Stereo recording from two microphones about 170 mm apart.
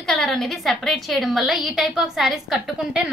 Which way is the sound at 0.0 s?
Centre (ahead or behind).